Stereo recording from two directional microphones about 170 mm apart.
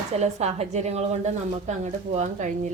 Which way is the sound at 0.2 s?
40° right (ahead or behind).